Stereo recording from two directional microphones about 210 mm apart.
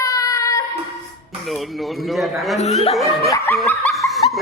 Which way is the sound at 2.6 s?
30° left (ahead or behind).